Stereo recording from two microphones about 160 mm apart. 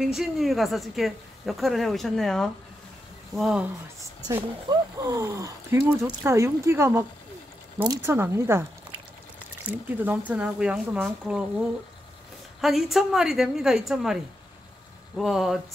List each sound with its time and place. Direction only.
0.0 s speech: 5° right (ahead or behind)
4.4 s speech: 25° right (ahead or behind)
9.7 s speech: 10° right (ahead or behind)
12.5 s speech: centre (ahead or behind)